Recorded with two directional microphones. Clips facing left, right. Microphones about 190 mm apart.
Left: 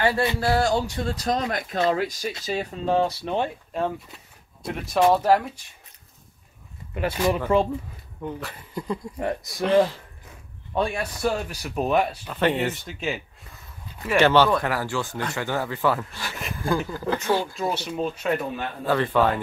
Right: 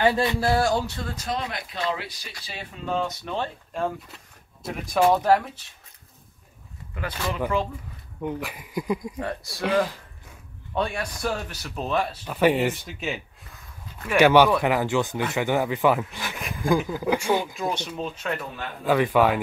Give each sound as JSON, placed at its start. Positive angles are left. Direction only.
{"t": 0.0, "sound": "speech", "side_deg": -15}
{"t": 0.4, "sound": "speech", "side_deg": 0}
{"t": 1.0, "sound": "speech", "side_deg": 35}
{"t": 3.7, "sound": "speech", "side_deg": 0}
{"t": 7.0, "sound": "speech", "side_deg": 25}
{"t": 8.2, "sound": "speech", "side_deg": -15}
{"t": 9.2, "sound": "speech", "side_deg": 20}
{"t": 10.7, "sound": "speech", "side_deg": 5}
{"t": 12.3, "sound": "speech", "side_deg": -10}
{"t": 14.1, "sound": "speech", "side_deg": -15}
{"t": 17.6, "sound": "speech", "side_deg": 5}
{"t": 18.9, "sound": "speech", "side_deg": -10}